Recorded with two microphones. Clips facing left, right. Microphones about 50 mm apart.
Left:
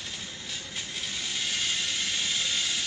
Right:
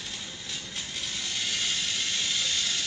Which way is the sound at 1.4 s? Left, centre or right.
Centre.